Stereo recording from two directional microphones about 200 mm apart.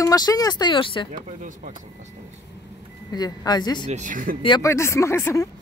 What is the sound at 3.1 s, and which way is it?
Speech, 20° left (ahead or behind).